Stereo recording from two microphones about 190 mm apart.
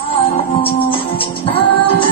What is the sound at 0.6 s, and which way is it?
Music, 30° left (ahead or behind).